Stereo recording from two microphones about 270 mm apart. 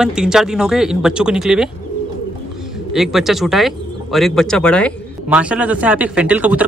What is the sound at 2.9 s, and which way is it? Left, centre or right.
Speech, centre.